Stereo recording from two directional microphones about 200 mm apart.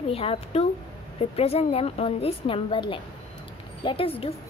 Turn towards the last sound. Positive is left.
turn(degrees=30)  # may be behind; listen again after turning